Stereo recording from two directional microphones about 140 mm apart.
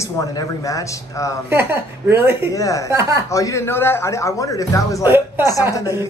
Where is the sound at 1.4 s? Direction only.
15° right (ahead or behind).